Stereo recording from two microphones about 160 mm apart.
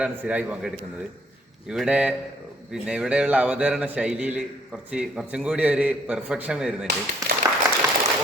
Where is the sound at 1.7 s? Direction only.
5° right (ahead or behind).